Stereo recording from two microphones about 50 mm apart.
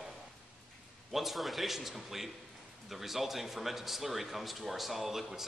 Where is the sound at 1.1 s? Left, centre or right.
Centre.